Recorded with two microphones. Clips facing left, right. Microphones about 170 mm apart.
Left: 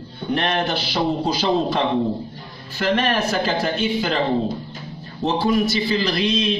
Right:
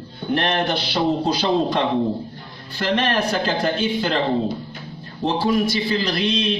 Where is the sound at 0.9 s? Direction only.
10° left (ahead or behind).